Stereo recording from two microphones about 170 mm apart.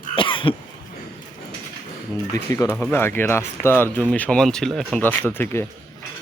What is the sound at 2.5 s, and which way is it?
Speech, 15° left (ahead or behind).